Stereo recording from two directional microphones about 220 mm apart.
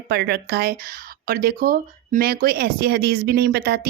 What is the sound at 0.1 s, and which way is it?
Speech, 45° right (ahead or behind).